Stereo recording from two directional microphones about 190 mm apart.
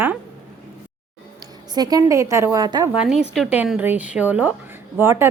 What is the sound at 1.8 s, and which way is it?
A woman's voice, 20° right (ahead or behind).